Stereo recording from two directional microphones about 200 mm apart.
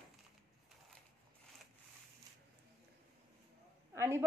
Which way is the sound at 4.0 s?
10° right (ahead or behind).